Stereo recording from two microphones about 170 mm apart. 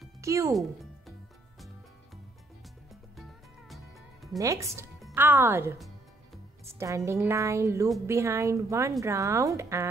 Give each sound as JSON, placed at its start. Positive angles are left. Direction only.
{"t": 0.2, "sound": "speech", "side_deg": -20}
{"t": 2.9, "sound": "music", "side_deg": 0}
{"t": 4.4, "sound": "speech", "side_deg": -20}